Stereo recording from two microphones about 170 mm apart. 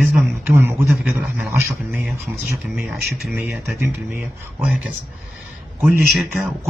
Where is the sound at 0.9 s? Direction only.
Centre (ahead or behind).